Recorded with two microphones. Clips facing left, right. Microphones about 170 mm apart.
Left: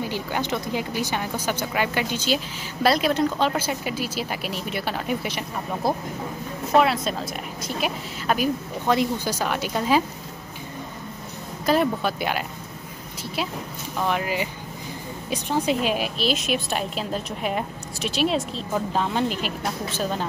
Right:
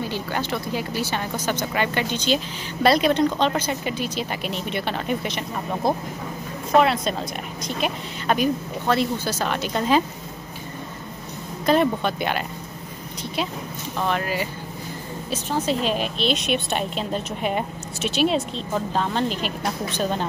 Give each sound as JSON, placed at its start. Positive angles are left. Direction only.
{"t": 0.0, "sound": "a woman's voice", "side_deg": 15}
{"t": 11.6, "sound": "a woman's voice", "side_deg": 5}
{"t": 13.9, "sound": "a woman's voice", "side_deg": 15}